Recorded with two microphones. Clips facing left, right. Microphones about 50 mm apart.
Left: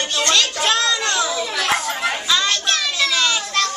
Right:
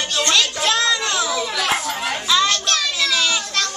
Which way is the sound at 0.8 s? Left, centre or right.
Centre.